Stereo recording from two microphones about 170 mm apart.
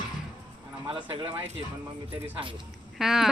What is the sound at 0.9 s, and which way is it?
Speech, 30° right (ahead or behind).